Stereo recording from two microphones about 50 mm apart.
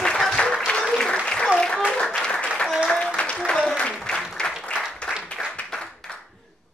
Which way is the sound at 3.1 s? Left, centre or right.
Left.